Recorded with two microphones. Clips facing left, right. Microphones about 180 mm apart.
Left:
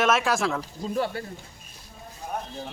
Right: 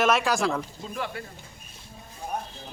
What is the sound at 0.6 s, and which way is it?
Speech, 35° left (ahead or behind).